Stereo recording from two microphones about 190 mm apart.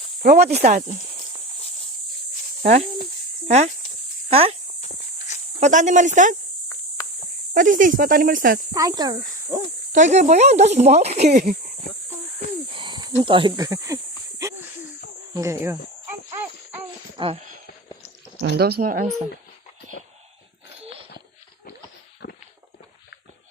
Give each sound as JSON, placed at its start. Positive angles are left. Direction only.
{"t": 0.2, "sound": "speech", "side_deg": -40}
{"t": 3.4, "sound": "speech", "side_deg": -35}
{"t": 5.5, "sound": "speech", "side_deg": -40}
{"t": 6.7, "sound": "cricket", "side_deg": 15}
{"t": 7.5, "sound": "speech", "side_deg": -45}
{"t": 8.7, "sound": "speech", "side_deg": -20}
{"t": 9.9, "sound": "speech", "side_deg": -40}
{"t": 12.7, "sound": "snake", "side_deg": -25}
{"t": 15.4, "sound": "speech", "side_deg": -15}
{"t": 16.3, "sound": "jingle bell", "side_deg": -15}
{"t": 17.2, "sound": "a sound", "side_deg": -35}
{"t": 18.3, "sound": "speech", "side_deg": -55}